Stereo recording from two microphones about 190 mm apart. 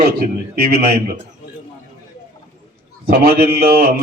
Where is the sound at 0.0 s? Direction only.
55° right (ahead or behind).